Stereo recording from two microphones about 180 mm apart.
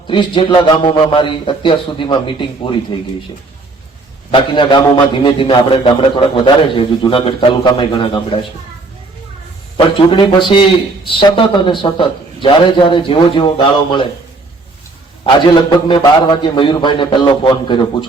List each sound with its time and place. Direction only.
0.1 s a man's voice: 25° left (ahead or behind)
4.3 s a man's voice: 30° left (ahead or behind)
9.7 s a man's voice: 25° left (ahead or behind)
15.9 s a man's voice: 25° left (ahead or behind)